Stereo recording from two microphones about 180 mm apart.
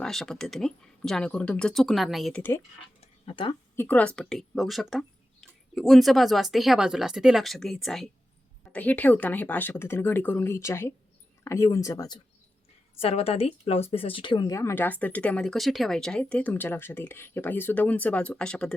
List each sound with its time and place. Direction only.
0.0 s speech: centre (ahead or behind)
3.0 s a sound: 30° left (ahead or behind)
3.8 s speech: 10° left (ahead or behind)
13.0 s speech: 35° left (ahead or behind); by 18.7 s 5° left (ahead or behind)